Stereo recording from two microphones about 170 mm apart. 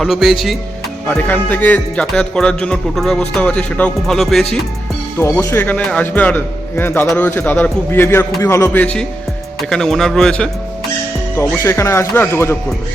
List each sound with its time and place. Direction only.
0.0 s speech: centre (ahead or behind)
1.0 s speech: 10° left (ahead or behind)
5.2 s a man's voice: 15° left (ahead or behind)
11.3 s a man's voice: 15° left (ahead or behind)